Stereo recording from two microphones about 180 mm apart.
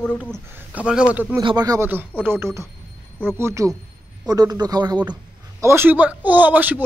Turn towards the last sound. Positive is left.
turn(degrees=-10)  # may be behind; listen again after turning